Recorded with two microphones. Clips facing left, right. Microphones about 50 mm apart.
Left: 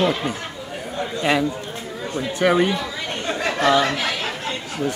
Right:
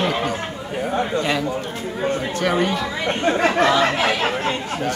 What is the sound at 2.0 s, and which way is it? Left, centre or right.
Chatter, right.